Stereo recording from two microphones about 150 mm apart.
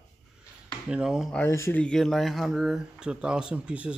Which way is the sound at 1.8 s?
5° left (ahead or behind).